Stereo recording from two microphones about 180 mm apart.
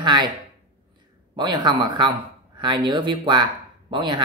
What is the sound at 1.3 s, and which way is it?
Speech, 25° right (ahead or behind).